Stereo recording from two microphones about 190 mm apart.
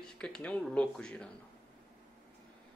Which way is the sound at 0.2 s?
5° left (ahead or behind).